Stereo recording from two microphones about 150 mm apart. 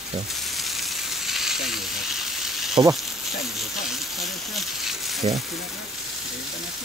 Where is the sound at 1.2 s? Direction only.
Centre (ahead or behind).